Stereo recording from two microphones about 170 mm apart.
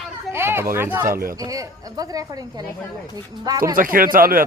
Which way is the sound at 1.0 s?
60° right (ahead or behind).